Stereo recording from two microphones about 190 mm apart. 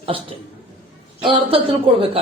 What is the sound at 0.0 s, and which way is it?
Speech, 30° right (ahead or behind).